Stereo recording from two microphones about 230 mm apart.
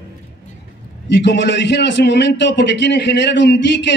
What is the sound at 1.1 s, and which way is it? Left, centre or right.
A man's voice, left.